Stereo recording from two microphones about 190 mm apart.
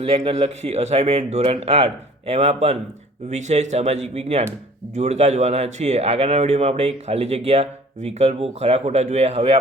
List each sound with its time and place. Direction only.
0.0 s a man's voice: 30° right (ahead or behind)